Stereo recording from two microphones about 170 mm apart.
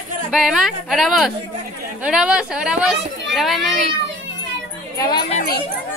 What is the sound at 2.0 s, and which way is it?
Speech, 5° right (ahead or behind).